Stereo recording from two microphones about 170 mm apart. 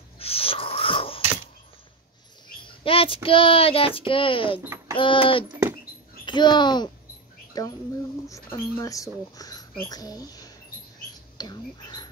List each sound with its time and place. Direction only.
0.2 s a sound: 35° left (ahead or behind)
2.6 s a child's voice: 30° left (ahead or behind)
11.3 s whispering: 25° left (ahead or behind)